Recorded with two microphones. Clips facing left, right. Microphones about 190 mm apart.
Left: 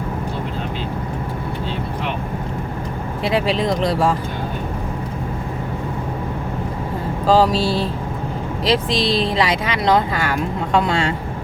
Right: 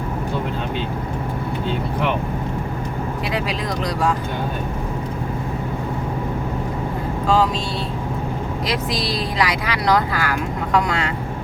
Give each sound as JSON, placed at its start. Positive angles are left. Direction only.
{"t": 3.2, "sound": "speech", "side_deg": 25}
{"t": 7.3, "sound": "speech", "side_deg": 35}